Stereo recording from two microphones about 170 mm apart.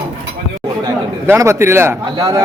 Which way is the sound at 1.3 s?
15° right (ahead or behind).